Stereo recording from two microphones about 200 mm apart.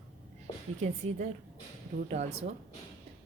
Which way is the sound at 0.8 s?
35° right (ahead or behind).